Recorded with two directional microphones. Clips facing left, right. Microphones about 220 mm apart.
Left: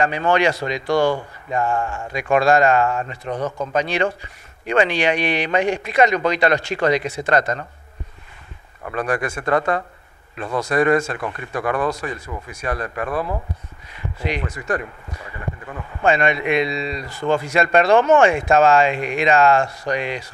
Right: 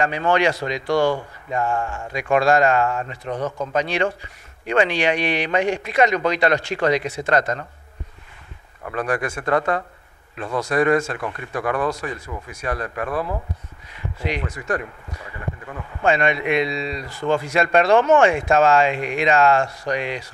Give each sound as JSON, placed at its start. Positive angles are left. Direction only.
{"t": 0.0, "sound": "speech", "side_deg": 20}
{"t": 4.7, "sound": "speech", "side_deg": 15}
{"t": 8.9, "sound": "speech", "side_deg": 25}
{"t": 14.2, "sound": "speech", "side_deg": 20}
{"t": 16.0, "sound": "speech", "side_deg": 20}